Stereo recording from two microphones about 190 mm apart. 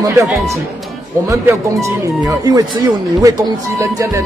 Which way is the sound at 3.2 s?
15° right (ahead or behind).